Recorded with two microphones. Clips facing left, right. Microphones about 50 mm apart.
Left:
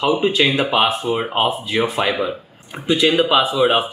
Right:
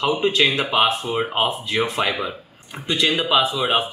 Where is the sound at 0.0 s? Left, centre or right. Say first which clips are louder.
Left 2 dB; centre.